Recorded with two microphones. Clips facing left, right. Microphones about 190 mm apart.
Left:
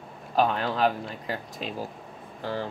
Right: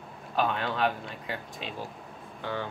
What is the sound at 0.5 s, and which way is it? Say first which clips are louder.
Speech: left 3 dB; 40° left (ahead or behind).